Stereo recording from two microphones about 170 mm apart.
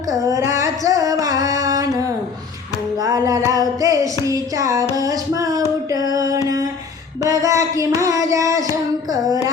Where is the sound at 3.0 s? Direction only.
20° right (ahead or behind).